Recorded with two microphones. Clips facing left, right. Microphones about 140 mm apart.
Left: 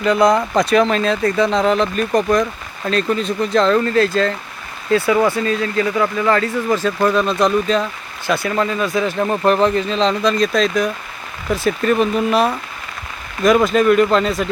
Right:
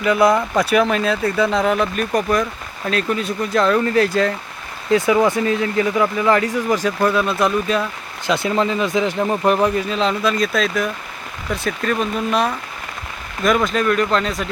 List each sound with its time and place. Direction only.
0.0 s speech: 5° right (ahead or behind)
8.3 s speech: 20° right (ahead or behind)
9.2 s speech: 5° right (ahead or behind)
13.7 s speech: 5° left (ahead or behind)